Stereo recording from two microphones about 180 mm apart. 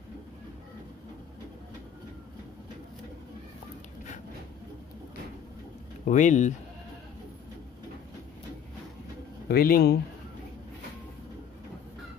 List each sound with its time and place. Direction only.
6.0 s speech: 45° left (ahead or behind)
9.5 s speech: 55° left (ahead or behind)